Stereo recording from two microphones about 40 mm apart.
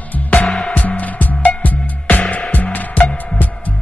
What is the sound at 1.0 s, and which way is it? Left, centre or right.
Music, left.